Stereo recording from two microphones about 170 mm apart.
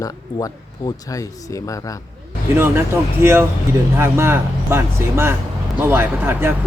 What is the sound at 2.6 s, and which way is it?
Speech, 15° right (ahead or behind).